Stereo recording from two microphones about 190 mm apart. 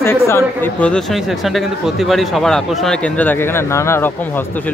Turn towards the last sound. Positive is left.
turn(degrees=10)  # may be behind; listen again after turning